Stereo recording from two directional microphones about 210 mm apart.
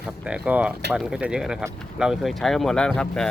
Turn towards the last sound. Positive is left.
turn(degrees=5)  # may be behind; listen again after turning